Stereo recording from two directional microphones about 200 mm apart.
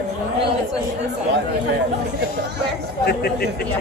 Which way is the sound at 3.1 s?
50° left (ahead or behind).